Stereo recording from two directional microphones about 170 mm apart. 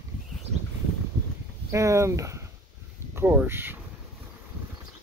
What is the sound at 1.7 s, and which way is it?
Speech, 20° right (ahead or behind).